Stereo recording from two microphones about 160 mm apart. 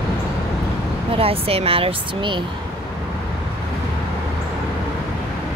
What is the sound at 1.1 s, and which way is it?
Speech, 35° right (ahead or behind).